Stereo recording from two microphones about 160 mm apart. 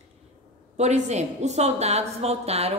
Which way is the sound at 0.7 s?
45° right (ahead or behind).